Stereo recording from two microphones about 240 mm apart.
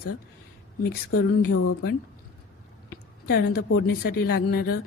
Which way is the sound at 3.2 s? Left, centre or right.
Left.